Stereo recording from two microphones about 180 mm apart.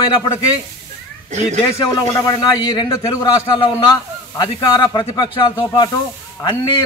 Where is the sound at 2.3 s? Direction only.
20° left (ahead or behind).